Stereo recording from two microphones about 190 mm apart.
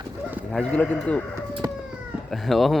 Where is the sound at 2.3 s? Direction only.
Centre (ahead or behind).